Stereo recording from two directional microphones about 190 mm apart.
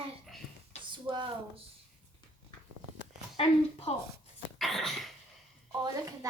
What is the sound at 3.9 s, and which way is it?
Speech, 30° left (ahead or behind).